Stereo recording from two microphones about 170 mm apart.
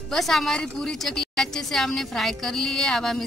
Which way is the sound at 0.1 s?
Centre (ahead or behind).